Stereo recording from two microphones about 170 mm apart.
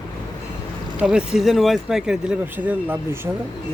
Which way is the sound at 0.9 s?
5° right (ahead or behind).